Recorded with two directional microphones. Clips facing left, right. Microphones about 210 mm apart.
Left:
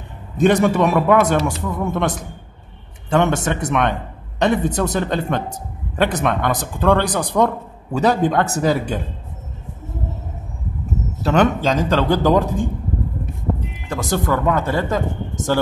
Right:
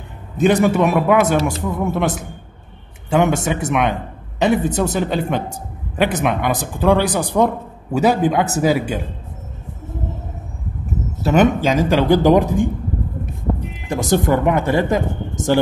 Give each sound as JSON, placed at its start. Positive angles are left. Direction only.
{"t": 0.4, "sound": "a man's voice", "side_deg": -5}
{"t": 11.2, "sound": "a man's voice", "side_deg": -10}
{"t": 13.8, "sound": "a man's voice", "side_deg": -20}